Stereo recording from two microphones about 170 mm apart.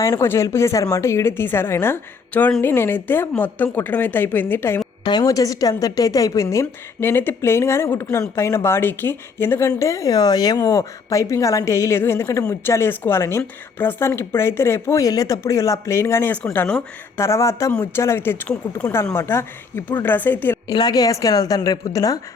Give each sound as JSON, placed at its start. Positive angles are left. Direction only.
{"t": 0.0, "sound": "speech", "side_deg": 15}
{"t": 5.0, "sound": "a woman's voice", "side_deg": 25}
{"t": 20.7, "sound": "a woman's voice", "side_deg": 25}